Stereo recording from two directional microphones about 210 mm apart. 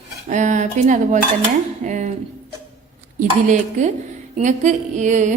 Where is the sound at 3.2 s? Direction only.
35° right (ahead or behind).